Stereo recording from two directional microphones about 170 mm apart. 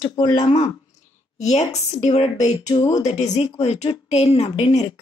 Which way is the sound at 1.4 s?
40° left (ahead or behind).